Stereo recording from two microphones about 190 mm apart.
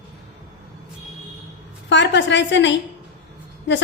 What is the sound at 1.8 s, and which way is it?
A woman's voice, 70° left (ahead or behind).